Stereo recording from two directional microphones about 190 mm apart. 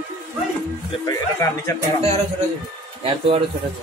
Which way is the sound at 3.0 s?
30° right (ahead or behind).